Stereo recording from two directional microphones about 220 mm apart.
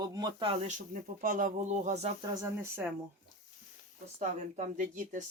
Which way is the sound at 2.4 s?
10° right (ahead or behind).